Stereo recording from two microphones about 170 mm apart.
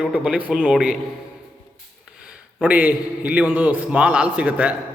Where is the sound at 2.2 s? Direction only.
5° right (ahead or behind).